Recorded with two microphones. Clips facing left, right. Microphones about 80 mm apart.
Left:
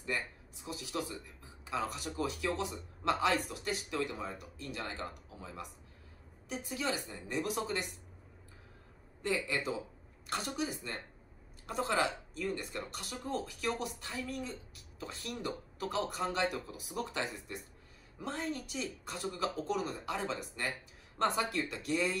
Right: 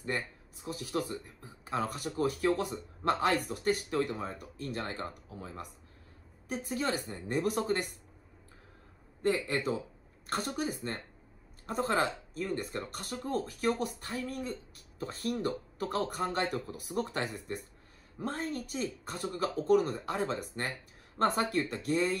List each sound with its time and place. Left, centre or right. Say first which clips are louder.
0.0 s speech: right 2 dB; right
9.2 s speech: right 4 dB; right